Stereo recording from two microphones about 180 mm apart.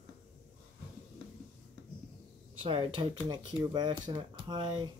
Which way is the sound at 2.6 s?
25° right (ahead or behind).